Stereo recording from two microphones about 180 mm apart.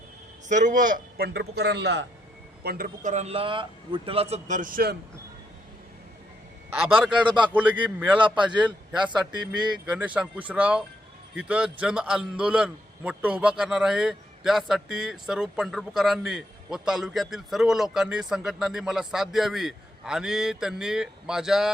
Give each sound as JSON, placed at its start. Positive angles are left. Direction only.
{"t": 0.4, "sound": "a man's voice", "side_deg": -45}
{"t": 2.6, "sound": "a man's voice", "side_deg": -55}
{"t": 6.7, "sound": "speech", "side_deg": -10}
{"t": 7.3, "sound": "a man's voice", "side_deg": -25}
{"t": 7.9, "sound": "a man's voice", "side_deg": -5}